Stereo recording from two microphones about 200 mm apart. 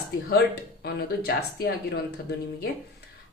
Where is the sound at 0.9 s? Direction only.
50° left (ahead or behind).